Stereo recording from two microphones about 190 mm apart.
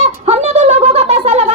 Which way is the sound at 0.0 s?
35° right (ahead or behind).